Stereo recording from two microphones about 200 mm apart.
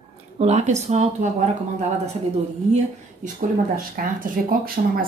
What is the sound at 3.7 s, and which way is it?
Speech, 45° right (ahead or behind).